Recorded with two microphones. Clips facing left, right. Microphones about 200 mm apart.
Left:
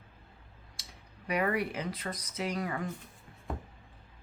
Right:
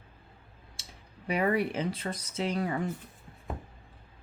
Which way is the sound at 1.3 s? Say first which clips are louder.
Right 3 dB; 25° right (ahead or behind).